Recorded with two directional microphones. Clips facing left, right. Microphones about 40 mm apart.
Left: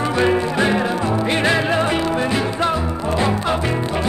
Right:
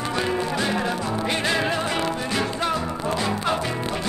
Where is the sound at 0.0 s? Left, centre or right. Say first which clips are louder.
Left 7 dB; left; by 3.2 s centre.